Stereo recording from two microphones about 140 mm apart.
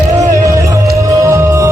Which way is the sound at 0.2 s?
20° right (ahead or behind).